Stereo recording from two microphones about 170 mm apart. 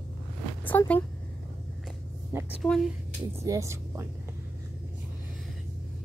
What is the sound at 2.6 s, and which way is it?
Speech, centre (ahead or behind).